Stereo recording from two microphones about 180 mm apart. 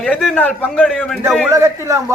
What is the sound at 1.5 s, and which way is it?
Speech, 15° right (ahead or behind).